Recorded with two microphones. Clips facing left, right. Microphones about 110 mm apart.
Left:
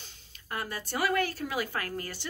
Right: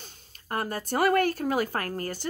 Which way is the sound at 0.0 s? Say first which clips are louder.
Right 4 dB; 45° right (ahead or behind).